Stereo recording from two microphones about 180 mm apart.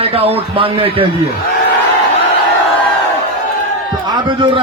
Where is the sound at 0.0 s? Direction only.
35° right (ahead or behind).